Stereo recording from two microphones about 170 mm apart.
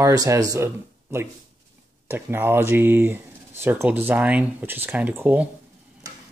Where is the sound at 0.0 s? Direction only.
20° right (ahead or behind).